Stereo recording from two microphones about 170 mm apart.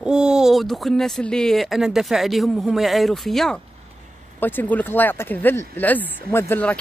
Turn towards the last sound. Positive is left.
turn(degrees=10)  # may be behind; listen again after turning